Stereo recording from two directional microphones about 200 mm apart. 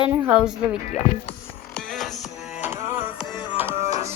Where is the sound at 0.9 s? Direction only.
35° left (ahead or behind).